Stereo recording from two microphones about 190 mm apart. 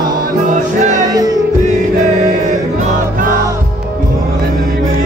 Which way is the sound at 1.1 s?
20° right (ahead or behind).